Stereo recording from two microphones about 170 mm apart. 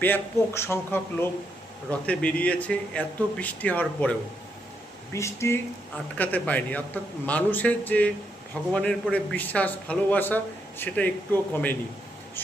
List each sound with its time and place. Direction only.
0.0 s speech: 15° left (ahead or behind)